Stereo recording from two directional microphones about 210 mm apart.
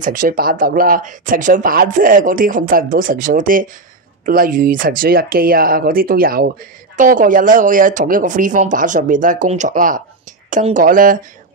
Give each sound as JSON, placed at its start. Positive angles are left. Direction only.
{"t": 0.0, "sound": "speech", "side_deg": -40}